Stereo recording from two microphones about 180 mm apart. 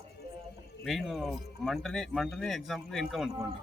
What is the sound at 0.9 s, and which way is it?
A man's voice, centre (ahead or behind).